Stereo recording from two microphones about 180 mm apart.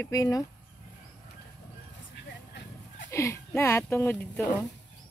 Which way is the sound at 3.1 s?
15° left (ahead or behind).